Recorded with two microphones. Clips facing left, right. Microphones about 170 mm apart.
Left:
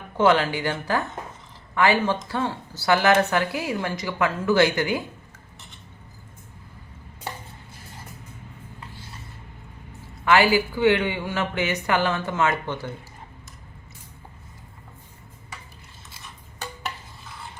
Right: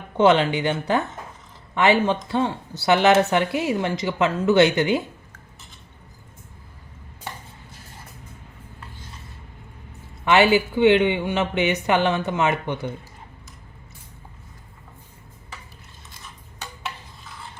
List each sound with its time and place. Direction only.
0.2 s speech: 20° right (ahead or behind)
10.2 s speech: 20° right (ahead or behind)